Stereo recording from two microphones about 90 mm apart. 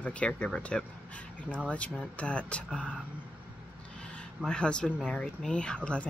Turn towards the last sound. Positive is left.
turn(degrees=10)  # may be behind; listen again after turning